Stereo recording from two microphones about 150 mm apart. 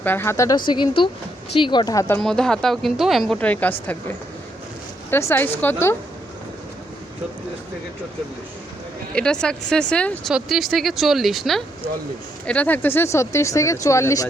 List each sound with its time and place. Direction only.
0.0 s speech: 15° left (ahead or behind)
2.1 s speech: 5° left (ahead or behind)
3.4 s speech: 10° left (ahead or behind)
5.1 s speech: 15° left (ahead or behind)
9.1 s speech: 5° left (ahead or behind)
12.5 s speech: 10° left (ahead or behind)